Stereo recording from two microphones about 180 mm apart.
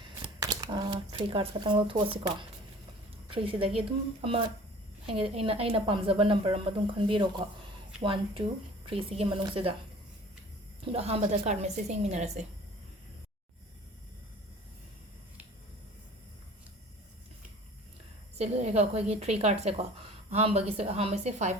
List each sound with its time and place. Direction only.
0.2 s a woman's voice: 20° right (ahead or behind)
10.8 s a woman's voice: 35° right (ahead or behind)
18.3 s a woman's voice: 35° right (ahead or behind)